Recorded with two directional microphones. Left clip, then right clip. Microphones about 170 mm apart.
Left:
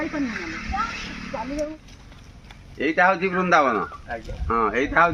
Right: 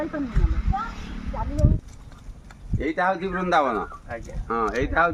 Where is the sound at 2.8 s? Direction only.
30° left (ahead or behind).